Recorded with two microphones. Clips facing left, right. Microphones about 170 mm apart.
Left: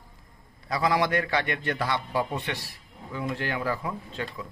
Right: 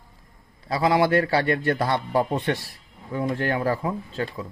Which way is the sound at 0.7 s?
25° right (ahead or behind).